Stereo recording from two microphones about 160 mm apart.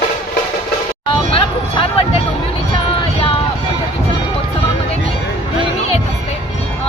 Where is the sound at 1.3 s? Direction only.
35° left (ahead or behind).